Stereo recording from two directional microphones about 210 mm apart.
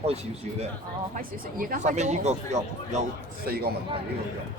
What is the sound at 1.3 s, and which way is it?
Speech, 40° right (ahead or behind).